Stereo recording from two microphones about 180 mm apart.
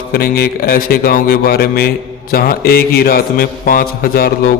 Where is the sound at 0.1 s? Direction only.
55° left (ahead or behind).